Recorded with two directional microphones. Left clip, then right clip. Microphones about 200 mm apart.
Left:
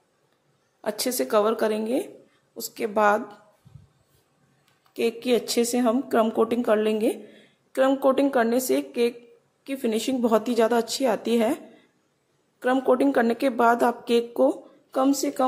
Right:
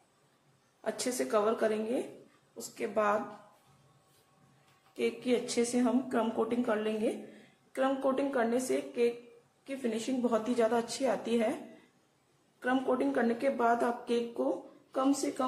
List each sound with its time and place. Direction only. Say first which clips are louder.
0.8 s speech: left 7 dB; 45° left (ahead or behind)
4.9 s speech: left 8 dB; 45° left (ahead or behind)
12.5 s speech: left 9 dB; 40° left (ahead or behind)